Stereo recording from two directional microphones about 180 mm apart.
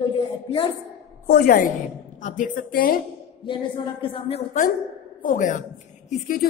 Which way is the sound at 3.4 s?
30° left (ahead or behind).